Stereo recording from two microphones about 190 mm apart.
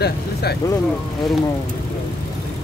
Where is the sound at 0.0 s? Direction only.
55° left (ahead or behind).